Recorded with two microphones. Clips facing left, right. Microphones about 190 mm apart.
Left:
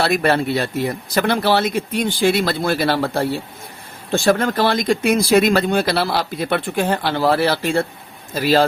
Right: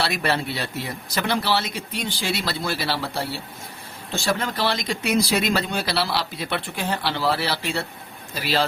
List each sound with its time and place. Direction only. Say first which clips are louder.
0.0 s speech: left 7 dB; 50° left (ahead or behind)